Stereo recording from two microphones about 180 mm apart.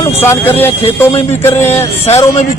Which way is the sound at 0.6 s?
15° left (ahead or behind).